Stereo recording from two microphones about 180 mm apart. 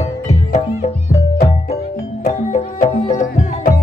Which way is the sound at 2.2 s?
40° left (ahead or behind).